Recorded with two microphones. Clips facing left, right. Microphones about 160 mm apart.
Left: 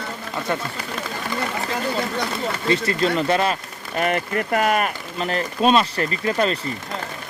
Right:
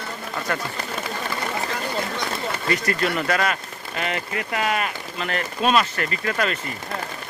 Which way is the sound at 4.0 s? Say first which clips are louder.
Left 6 dB; 50° left (ahead or behind).